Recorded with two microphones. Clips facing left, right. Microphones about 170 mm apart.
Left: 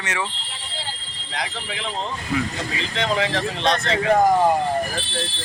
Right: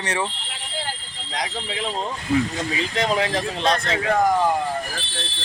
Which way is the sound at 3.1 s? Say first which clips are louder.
Even; 35° right (ahead or behind).